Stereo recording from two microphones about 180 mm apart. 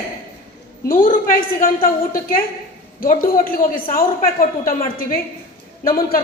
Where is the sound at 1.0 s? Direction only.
50° left (ahead or behind).